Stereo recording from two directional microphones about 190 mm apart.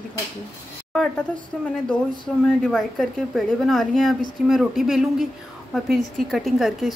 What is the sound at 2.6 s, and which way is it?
A woman's voice, 5° left (ahead or behind).